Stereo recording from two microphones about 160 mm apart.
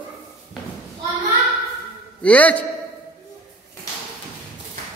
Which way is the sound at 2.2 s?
10° left (ahead or behind).